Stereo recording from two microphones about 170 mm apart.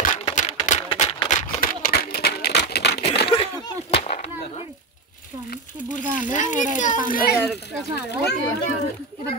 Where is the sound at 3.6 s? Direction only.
35° left (ahead or behind).